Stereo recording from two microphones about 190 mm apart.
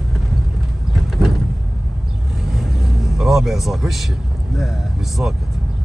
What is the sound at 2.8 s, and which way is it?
Speech, centre (ahead or behind).